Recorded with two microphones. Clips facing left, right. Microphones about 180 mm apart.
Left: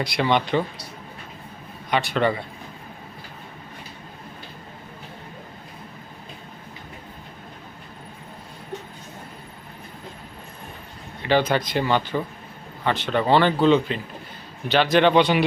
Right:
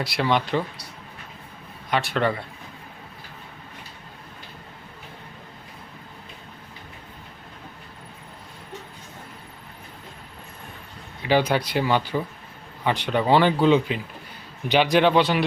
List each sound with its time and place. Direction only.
0.0 s a man's voice: 5° right (ahead or behind)
1.9 s a man's voice: centre (ahead or behind)
11.2 s a man's voice: 10° right (ahead or behind)